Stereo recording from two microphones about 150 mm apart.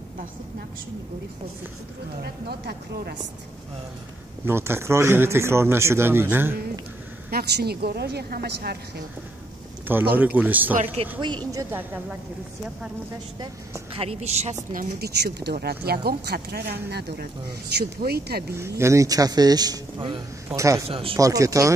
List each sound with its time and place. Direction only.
2.2 s speech: 90° right
4.5 s a man's voice: 15° right (ahead or behind)
7.2 s speech: 90° right
10.1 s a man's voice: 10° right (ahead or behind)
13.9 s a woman's voice: 45° right (ahead or behind)
14.7 s speech: 75° right (ahead or behind)
18.8 s a man's voice: 20° right (ahead or behind)
20.4 s a man's voice: 20° right (ahead or behind)
20.9 s speech: 40° right (ahead or behind)
21.2 s a man's voice: 20° right (ahead or behind)